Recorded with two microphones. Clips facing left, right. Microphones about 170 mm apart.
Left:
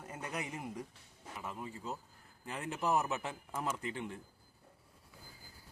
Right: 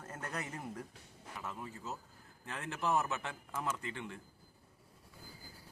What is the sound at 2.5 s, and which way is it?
Speech, 15° left (ahead or behind).